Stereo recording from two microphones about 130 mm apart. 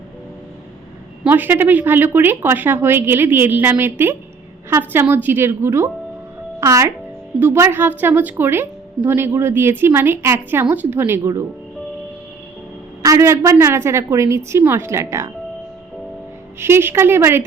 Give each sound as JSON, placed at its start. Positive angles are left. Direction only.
{"t": 1.2, "sound": "a woman's voice", "side_deg": -15}
{"t": 13.0, "sound": "a woman's voice", "side_deg": -25}
{"t": 16.6, "sound": "a woman's voice", "side_deg": -20}